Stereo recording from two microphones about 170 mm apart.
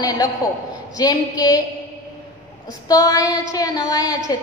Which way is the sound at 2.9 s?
20° left (ahead or behind).